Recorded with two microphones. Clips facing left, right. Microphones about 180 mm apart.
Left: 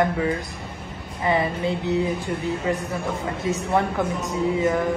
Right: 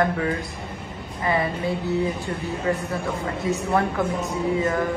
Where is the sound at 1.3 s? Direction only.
20° left (ahead or behind).